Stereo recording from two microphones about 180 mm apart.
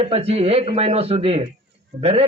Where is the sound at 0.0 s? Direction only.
35° right (ahead or behind).